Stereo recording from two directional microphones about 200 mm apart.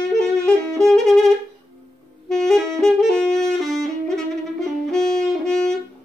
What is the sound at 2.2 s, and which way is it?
Saxophone, centre (ahead or behind).